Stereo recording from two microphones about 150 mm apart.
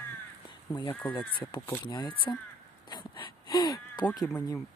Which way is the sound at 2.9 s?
30° left (ahead or behind).